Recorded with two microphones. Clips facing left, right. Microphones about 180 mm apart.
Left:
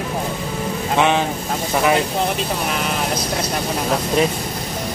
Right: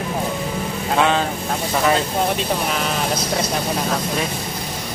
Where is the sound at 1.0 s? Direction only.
15° left (ahead or behind).